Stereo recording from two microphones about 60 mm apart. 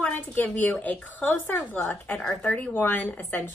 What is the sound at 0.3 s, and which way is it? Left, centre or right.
A woman's voice, left.